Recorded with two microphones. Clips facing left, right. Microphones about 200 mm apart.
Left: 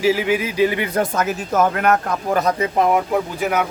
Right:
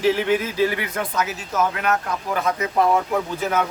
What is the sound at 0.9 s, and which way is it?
Speech, 45° left (ahead or behind).